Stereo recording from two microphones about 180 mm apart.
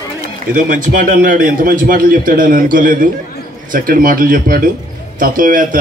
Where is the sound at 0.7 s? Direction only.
45° right (ahead or behind).